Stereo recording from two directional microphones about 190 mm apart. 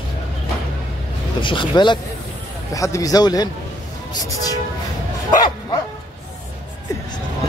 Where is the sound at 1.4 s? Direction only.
25° left (ahead or behind).